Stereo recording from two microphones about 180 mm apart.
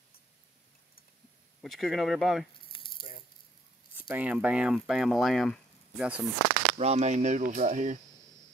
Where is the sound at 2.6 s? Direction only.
30° left (ahead or behind).